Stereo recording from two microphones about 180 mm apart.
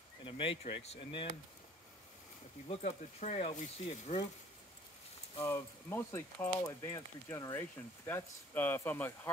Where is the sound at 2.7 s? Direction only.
40° left (ahead or behind).